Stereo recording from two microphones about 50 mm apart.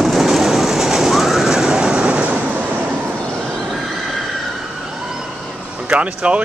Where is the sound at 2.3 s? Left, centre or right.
Right.